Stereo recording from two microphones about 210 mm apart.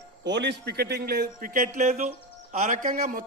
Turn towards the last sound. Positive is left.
turn(degrees=-35)  # may be behind; listen again after turning